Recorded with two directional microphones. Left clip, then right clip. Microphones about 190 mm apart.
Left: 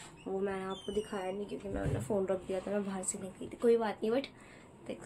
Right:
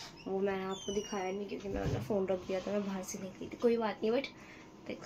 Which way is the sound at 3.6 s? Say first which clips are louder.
Left 2 dB; 10° left (ahead or behind).